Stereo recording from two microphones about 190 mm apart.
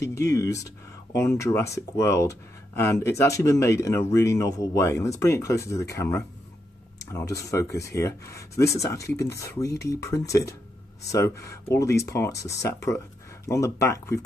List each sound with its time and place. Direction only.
0.0 s speech: 15° left (ahead or behind)